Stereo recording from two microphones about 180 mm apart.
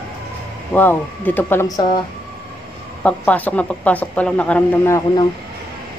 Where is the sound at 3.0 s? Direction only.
10° left (ahead or behind).